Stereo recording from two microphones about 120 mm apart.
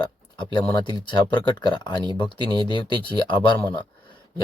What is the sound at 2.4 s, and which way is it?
Speech, 40° right (ahead or behind).